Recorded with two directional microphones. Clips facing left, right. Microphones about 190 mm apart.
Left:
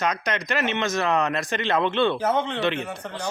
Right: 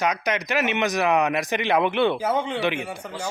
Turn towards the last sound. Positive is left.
turn(degrees=-10)  # may be behind; listen again after turning